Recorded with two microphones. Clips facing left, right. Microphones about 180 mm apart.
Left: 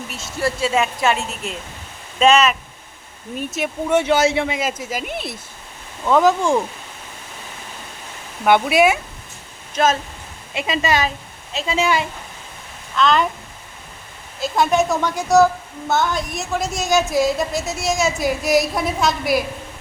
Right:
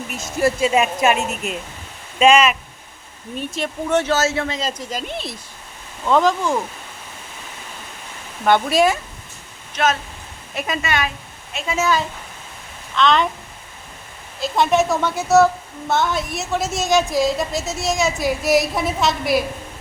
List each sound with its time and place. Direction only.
0.3 s a woman's voice: 20° right (ahead or behind)
3.5 s speech: 10° left (ahead or behind)
8.4 s speech: 10° left (ahead or behind)
10.5 s a woman's voice: 25° left (ahead or behind)
13.0 s a woman's voice: centre (ahead or behind)
14.4 s a woman's voice: centre (ahead or behind)